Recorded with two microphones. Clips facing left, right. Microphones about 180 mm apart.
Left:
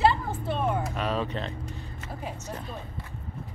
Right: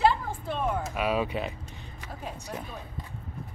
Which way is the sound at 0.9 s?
10° right (ahead or behind).